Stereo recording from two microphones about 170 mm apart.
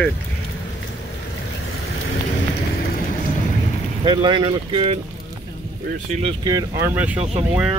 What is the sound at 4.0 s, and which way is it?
Speech, 25° right (ahead or behind).